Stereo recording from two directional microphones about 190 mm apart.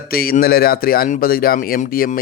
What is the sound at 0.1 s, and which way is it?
Speech, 50° left (ahead or behind).